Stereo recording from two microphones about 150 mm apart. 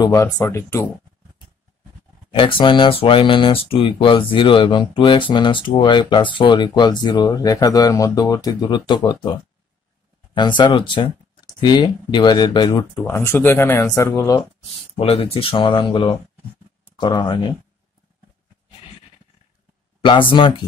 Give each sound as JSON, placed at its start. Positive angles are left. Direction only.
{"t": 0.0, "sound": "speech", "side_deg": 20}
{"t": 2.3, "sound": "speech", "side_deg": 35}
{"t": 13.0, "sound": "speech", "side_deg": 15}
{"t": 15.0, "sound": "speech", "side_deg": 40}
{"t": 20.0, "sound": "speech", "side_deg": 35}